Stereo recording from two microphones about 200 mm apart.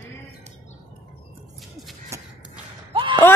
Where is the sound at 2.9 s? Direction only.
25° right (ahead or behind).